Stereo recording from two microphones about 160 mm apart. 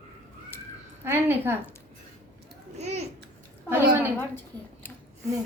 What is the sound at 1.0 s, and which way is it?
Speech, 15° right (ahead or behind).